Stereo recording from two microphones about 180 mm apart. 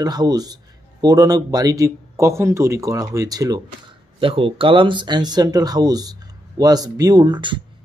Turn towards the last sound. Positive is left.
turn(degrees=-25)  # may be behind; listen again after turning